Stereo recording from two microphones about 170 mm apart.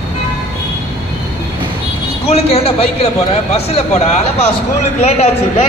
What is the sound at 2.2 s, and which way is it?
Speech, 35° left (ahead or behind).